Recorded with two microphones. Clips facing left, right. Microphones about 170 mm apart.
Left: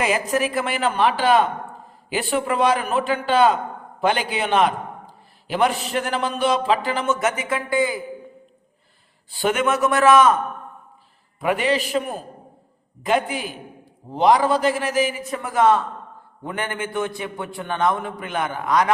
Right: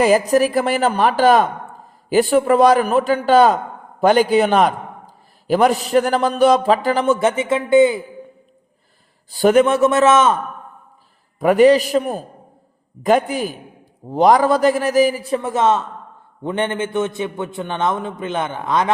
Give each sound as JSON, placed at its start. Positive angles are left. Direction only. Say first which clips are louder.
{"t": 0.0, "sound": "a man's voice", "louder": "right 8 dB", "side_deg": -40}
{"t": 9.3, "sound": "a man's voice", "louder": "right 8 dB", "side_deg": -40}
{"t": 11.3, "sound": "a man's voice", "louder": "right 10 dB", "side_deg": -40}